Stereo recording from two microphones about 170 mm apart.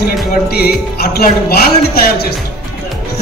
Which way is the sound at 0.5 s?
65° left (ahead or behind).